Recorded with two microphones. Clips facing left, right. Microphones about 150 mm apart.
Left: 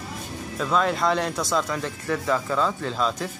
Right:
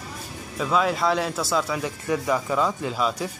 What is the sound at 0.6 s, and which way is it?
Speech, 5° right (ahead or behind).